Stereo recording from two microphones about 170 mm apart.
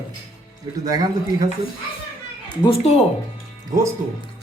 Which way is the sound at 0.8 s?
20° right (ahead or behind).